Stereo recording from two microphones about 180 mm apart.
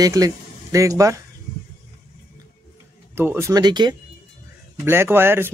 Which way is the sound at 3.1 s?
10° right (ahead or behind).